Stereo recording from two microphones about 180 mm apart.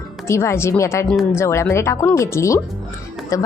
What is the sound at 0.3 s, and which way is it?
Speech, 15° left (ahead or behind).